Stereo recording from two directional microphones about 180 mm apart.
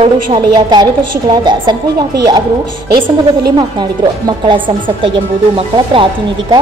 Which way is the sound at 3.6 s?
25° right (ahead or behind).